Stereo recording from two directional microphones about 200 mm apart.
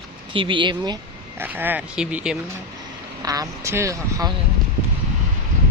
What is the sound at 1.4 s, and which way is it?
Speech, 10° right (ahead or behind).